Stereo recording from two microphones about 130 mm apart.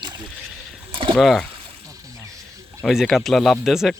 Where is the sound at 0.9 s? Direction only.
40° right (ahead or behind).